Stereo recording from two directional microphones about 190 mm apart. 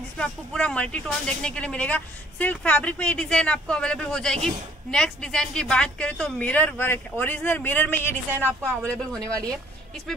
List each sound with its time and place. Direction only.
0.2 s a woman's voice: 5° left (ahead or behind)